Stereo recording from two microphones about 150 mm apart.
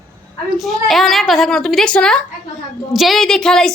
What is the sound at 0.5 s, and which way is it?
A woman's voice, centre (ahead or behind).